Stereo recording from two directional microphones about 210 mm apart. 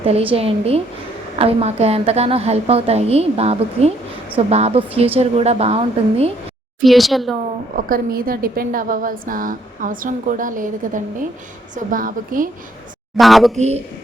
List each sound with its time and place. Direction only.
0.0 s a woman's voice: 25° right (ahead or behind)
6.8 s speech: centre (ahead or behind)
7.9 s a woman's voice: 45° right (ahead or behind)
13.1 s speech: centre (ahead or behind)